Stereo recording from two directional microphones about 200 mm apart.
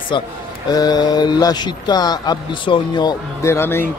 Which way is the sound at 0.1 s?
25° left (ahead or behind).